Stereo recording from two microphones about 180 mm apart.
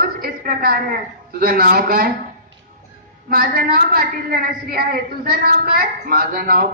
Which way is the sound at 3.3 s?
55° right (ahead or behind).